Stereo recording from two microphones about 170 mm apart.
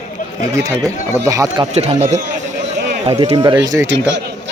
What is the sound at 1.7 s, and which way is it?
Speech, 40° right (ahead or behind).